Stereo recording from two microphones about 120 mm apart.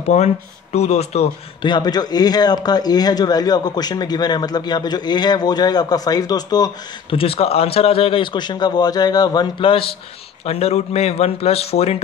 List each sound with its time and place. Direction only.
0.1 s speech: 70° left (ahead or behind)
1.6 s speech: 35° left (ahead or behind)
7.1 s a man's voice: 50° left (ahead or behind)
10.4 s speech: 60° left (ahead or behind)